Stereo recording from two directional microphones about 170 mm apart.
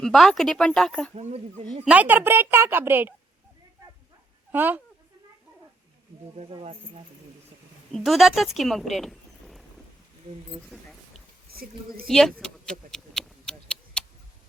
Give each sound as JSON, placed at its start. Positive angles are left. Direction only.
{"t": 0.0, "sound": "speech", "side_deg": 0}
{"t": 1.1, "sound": "speech", "side_deg": -40}
{"t": 1.8, "sound": "speech", "side_deg": -10}
{"t": 4.5, "sound": "speech", "side_deg": -10}
{"t": 6.4, "sound": "speech", "side_deg": -40}
{"t": 7.9, "sound": "speech", "side_deg": 0}
{"t": 11.5, "sound": "speech", "side_deg": -60}
{"t": 12.0, "sound": "speech", "side_deg": 0}
{"t": 12.9, "sound": "a sound", "side_deg": 5}